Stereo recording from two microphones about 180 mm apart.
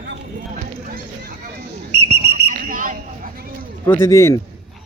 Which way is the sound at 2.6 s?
45° right (ahead or behind).